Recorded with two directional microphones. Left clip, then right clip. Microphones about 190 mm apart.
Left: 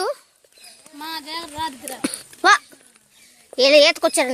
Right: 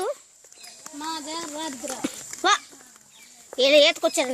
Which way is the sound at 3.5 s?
35° left (ahead or behind).